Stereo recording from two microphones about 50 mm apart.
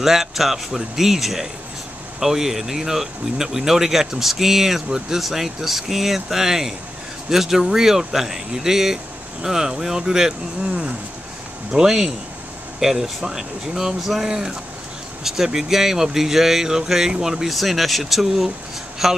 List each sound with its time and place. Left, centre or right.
0.0 s speech: centre
10.7 s speech: right
11.7 s speech: centre